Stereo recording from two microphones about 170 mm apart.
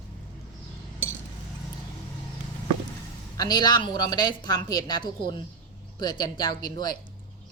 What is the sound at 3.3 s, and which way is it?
A woman's voice, 25° left (ahead or behind).